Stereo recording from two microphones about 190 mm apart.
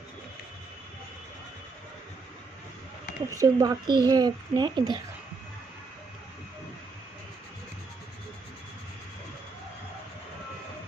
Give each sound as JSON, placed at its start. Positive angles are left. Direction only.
{"t": 3.3, "sound": "a child's voice", "side_deg": -20}